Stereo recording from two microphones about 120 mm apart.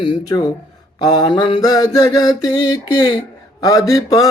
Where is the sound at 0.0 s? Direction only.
40° left (ahead or behind).